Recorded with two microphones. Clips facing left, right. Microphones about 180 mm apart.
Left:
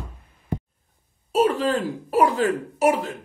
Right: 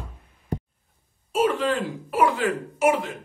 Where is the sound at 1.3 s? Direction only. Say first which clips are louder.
Left 2 dB; 35° left (ahead or behind).